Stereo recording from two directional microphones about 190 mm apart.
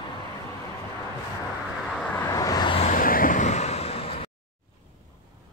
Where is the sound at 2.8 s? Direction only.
45° left (ahead or behind); by 4.2 s 30° left (ahead or behind).